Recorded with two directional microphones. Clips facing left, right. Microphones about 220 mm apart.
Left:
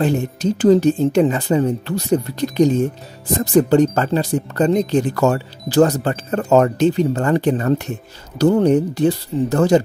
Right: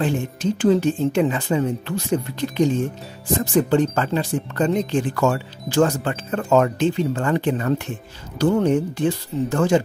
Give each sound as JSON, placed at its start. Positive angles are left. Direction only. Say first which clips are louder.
{"t": 0.0, "sound": "speech", "louder": "left 4 dB", "side_deg": 40}